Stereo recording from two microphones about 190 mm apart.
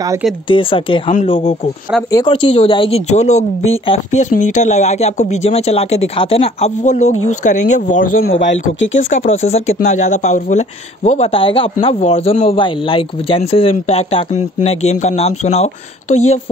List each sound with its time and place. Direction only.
0.5 s a man's voice: 25° left (ahead or behind)
8.4 s speech: 75° left (ahead or behind)
9.2 s a man's voice: 35° left (ahead or behind)